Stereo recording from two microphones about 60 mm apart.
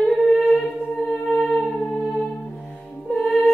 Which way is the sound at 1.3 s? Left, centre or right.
Centre.